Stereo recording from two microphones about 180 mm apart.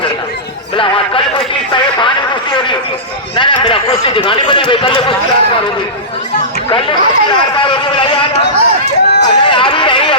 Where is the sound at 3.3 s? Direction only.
25° left (ahead or behind).